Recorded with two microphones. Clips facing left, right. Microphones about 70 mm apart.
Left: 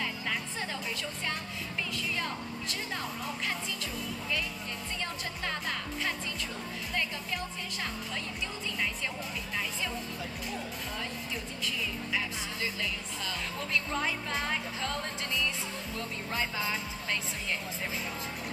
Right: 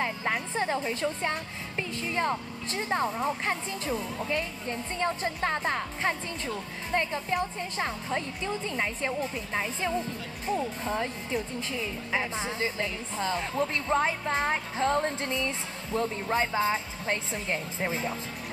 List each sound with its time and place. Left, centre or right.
0.0 s speech: right